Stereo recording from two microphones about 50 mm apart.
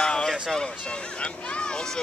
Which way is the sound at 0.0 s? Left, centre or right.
Centre.